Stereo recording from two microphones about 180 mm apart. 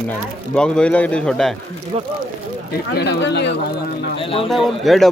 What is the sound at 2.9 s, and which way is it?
Speech, 70° left (ahead or behind).